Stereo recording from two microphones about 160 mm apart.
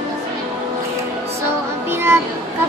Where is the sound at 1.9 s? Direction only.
15° right (ahead or behind).